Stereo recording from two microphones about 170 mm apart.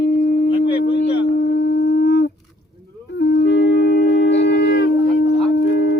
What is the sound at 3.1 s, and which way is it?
Wind instrument, 85° left.